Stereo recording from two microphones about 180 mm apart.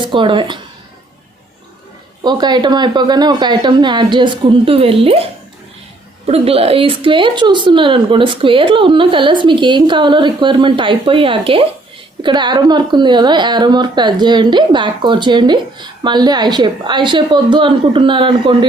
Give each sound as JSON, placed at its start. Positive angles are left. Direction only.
{"t": 0.0, "sound": "a woman's voice", "side_deg": -25}
{"t": 2.2, "sound": "a woman's voice", "side_deg": -25}